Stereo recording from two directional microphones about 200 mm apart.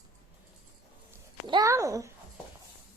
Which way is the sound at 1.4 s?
20° right (ahead or behind).